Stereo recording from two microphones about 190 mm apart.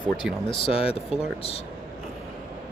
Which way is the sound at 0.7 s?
30° left (ahead or behind).